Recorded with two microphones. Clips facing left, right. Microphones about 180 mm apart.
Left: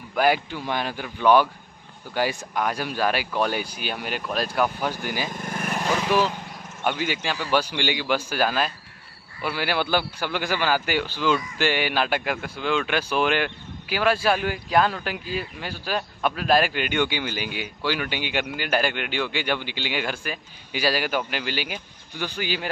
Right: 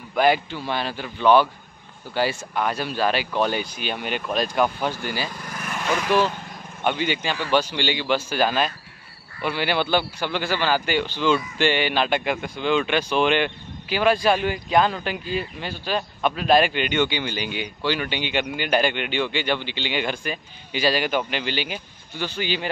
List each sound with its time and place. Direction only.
0.1 s speech: 10° left (ahead or behind)
5.4 s vehicle: 50° left (ahead or behind)
5.7 s vehicle: 35° left (ahead or behind)
6.0 s a man's voice: 10° left (ahead or behind)